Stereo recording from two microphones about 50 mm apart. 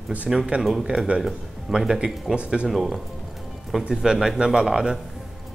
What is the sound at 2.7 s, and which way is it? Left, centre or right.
Speech, centre.